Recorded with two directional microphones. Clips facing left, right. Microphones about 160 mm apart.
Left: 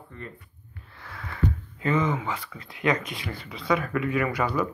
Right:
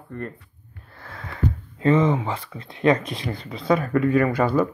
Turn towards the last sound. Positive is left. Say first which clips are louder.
# right 6 dB
turn(degrees=-50)  # may be behind; listen again after turning